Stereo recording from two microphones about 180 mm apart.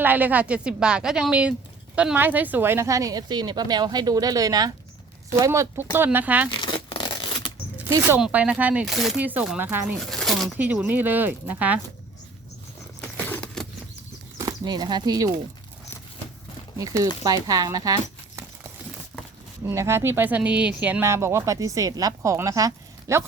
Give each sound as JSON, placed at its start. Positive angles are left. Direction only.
{"t": 0.0, "sound": "speech", "side_deg": -10}
{"t": 6.5, "sound": "a sound", "side_deg": 25}
{"t": 8.2, "sound": "speech", "side_deg": -5}
{"t": 10.0, "sound": "speech", "side_deg": 0}
{"t": 13.1, "sound": "vehicle", "side_deg": 10}
{"t": 14.3, "sound": "speech", "side_deg": -20}
{"t": 16.7, "sound": "speech", "side_deg": -20}
{"t": 19.6, "sound": "speech", "side_deg": -15}